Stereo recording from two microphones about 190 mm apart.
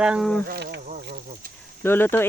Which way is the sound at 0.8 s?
40° right (ahead or behind).